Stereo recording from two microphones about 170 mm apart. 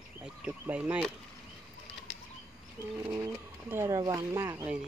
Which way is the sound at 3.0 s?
25° right (ahead or behind).